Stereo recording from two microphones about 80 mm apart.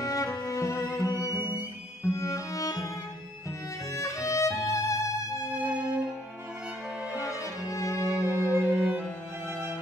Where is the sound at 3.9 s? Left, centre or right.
Left.